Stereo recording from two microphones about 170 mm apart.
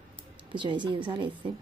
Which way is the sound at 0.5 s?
30° right (ahead or behind).